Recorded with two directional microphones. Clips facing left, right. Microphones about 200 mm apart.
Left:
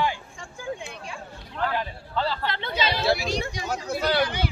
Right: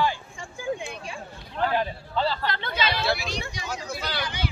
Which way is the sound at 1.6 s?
20° right (ahead or behind).